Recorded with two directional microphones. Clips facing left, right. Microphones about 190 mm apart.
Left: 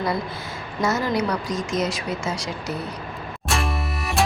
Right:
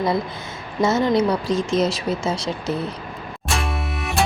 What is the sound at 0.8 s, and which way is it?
Speech, 25° right (ahead or behind).